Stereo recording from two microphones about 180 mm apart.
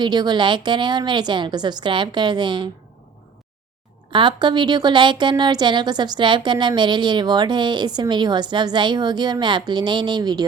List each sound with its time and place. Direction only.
0.0 s a woman's voice: 25° right (ahead or behind)
4.1 s a woman's voice: 30° right (ahead or behind)